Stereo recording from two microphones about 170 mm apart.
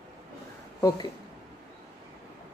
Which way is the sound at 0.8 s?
25° left (ahead or behind).